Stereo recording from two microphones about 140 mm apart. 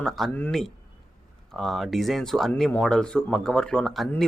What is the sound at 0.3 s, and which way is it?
Speech, 10° left (ahead or behind).